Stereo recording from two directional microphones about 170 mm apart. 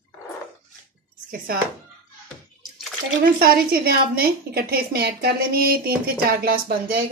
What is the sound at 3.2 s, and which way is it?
A woman's voice, 60° right (ahead or behind).